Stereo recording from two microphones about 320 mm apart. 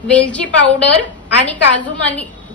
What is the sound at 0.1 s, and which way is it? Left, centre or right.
A woman's voice, centre.